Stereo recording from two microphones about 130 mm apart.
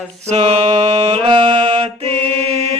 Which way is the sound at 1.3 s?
35° right (ahead or behind).